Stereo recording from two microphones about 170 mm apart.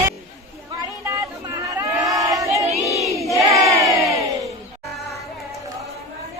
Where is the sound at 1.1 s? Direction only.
20° right (ahead or behind).